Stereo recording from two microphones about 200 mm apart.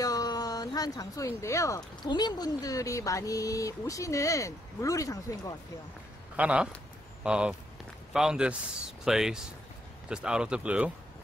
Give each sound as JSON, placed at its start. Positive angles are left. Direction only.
{"t": 0.0, "sound": "speech", "side_deg": 20}
{"t": 6.3, "sound": "speech", "side_deg": -5}